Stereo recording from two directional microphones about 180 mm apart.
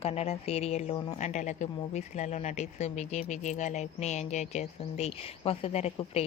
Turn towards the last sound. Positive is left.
turn(degrees=35)  # may be behind; listen again after turning